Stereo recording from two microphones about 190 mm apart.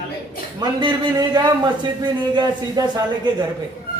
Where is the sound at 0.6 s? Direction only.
20° right (ahead or behind).